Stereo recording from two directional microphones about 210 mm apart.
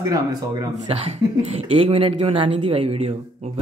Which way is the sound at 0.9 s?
30° right (ahead or behind).